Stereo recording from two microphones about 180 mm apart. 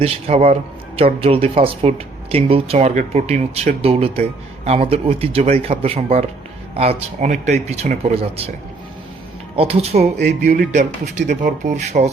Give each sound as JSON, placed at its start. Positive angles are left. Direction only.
{"t": 0.0, "sound": "speech", "side_deg": -35}
{"t": 9.6, "sound": "speech", "side_deg": -35}
{"t": 10.2, "sound": "speech", "side_deg": -55}